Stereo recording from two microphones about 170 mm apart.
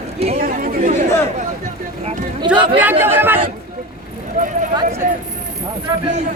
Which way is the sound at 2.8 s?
10° right (ahead or behind).